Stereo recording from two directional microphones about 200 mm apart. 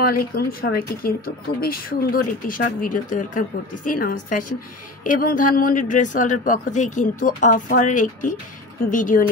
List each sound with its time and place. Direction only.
0.0 s a woman's voice: 45° left (ahead or behind)